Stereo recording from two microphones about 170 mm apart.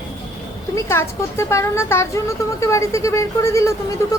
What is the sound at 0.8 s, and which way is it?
Speech, 15° left (ahead or behind).